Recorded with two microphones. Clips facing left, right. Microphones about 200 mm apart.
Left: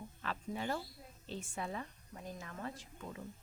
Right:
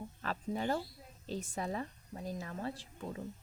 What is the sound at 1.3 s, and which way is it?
Speech, 40° right (ahead or behind).